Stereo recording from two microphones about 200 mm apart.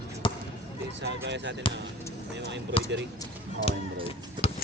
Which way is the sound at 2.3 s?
60° right (ahead or behind).